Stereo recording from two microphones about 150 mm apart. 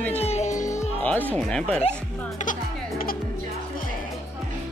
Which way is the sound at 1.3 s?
5° left (ahead or behind).